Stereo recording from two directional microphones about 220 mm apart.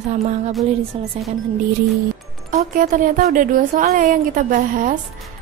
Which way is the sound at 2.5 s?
40° right (ahead or behind).